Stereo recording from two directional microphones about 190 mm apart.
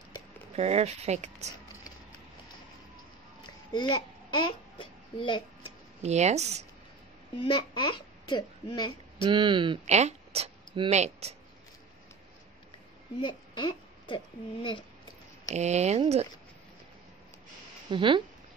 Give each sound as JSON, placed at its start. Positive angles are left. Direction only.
{"t": 0.6, "sound": "speech", "side_deg": -35}
{"t": 3.7, "sound": "babbling", "side_deg": 25}
{"t": 6.0, "sound": "speech", "side_deg": -35}
{"t": 7.3, "sound": "a child's voice", "side_deg": 25}
{"t": 9.3, "sound": "speech", "side_deg": -25}
{"t": 13.2, "sound": "speech", "side_deg": 25}
{"t": 15.5, "sound": "speech", "side_deg": -35}
{"t": 17.8, "sound": "speech", "side_deg": -25}